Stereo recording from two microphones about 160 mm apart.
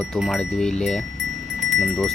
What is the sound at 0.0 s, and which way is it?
Speech, centre (ahead or behind).